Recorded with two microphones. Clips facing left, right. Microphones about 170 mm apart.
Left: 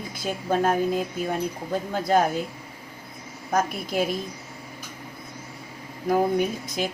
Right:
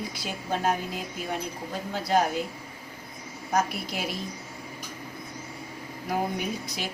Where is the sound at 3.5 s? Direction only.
50° left (ahead or behind).